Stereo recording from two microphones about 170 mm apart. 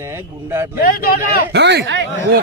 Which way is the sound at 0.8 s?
60° left (ahead or behind).